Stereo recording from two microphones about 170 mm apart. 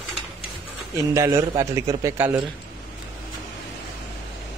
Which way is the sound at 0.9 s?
15° right (ahead or behind).